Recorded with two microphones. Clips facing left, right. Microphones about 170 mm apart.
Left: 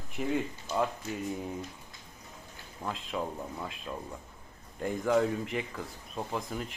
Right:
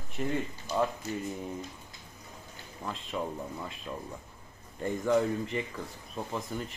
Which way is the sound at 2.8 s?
Centre (ahead or behind).